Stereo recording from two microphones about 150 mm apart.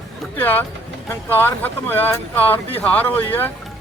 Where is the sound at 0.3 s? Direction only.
10° left (ahead or behind).